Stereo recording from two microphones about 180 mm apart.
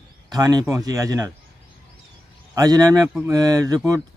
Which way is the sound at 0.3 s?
20° right (ahead or behind).